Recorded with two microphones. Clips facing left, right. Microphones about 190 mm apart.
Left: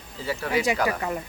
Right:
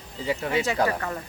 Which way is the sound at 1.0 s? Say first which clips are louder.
Left 3 dB; 15° left (ahead or behind).